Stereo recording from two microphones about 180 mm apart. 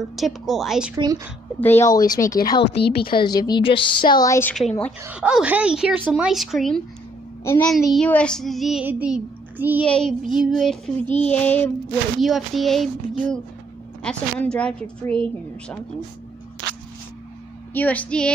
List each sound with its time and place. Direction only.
0.1 s child singing: centre (ahead or behind)
0.9 s a woman's voice: 20° right (ahead or behind)
1.6 s a woman's voice: 10° left (ahead or behind)
2.6 s speech: 65° left (ahead or behind)
3.1 s a woman's voice: 25° left (ahead or behind)
4.6 s child singing: 5° left (ahead or behind)
5.0 s child singing: 5° right (ahead or behind)
9.8 s child singing: 5° left (ahead or behind)
11.2 s a woman's voice: 10° left (ahead or behind)
12.2 s child singing: centre (ahead or behind)
14.0 s child singing: 5° left (ahead or behind)
17.7 s a woman's voice: 10° left (ahead or behind)